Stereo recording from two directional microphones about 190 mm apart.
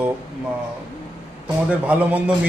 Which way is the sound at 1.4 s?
5° right (ahead or behind).